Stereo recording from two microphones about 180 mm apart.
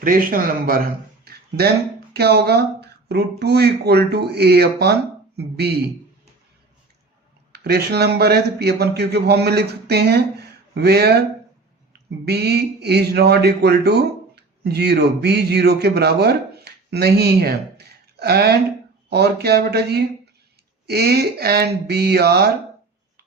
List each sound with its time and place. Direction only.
0.0 s speech: 50° right (ahead or behind)
1.2 s a sound: 60° right (ahead or behind)
2.1 s speech: 65° right (ahead or behind)
7.5 s speech: 65° right (ahead or behind)
12.2 s a man's voice: 65° right (ahead or behind)